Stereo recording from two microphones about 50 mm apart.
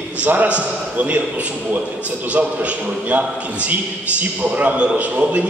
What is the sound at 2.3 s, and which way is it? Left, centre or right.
A man's voice, right.